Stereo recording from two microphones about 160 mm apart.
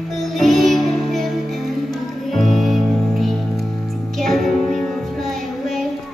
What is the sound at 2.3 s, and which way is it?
Music, centre (ahead or behind).